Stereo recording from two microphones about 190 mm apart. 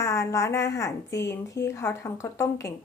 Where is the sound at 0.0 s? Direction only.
15° left (ahead or behind).